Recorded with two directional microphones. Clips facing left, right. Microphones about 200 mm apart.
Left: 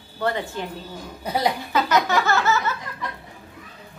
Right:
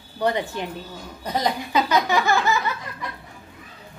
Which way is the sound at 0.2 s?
15° right (ahead or behind).